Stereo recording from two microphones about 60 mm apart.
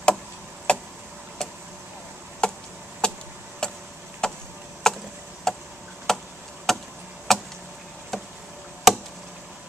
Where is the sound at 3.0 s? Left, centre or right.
Centre.